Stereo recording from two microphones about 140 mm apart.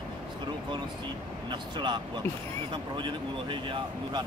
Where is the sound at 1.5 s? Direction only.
35° right (ahead or behind).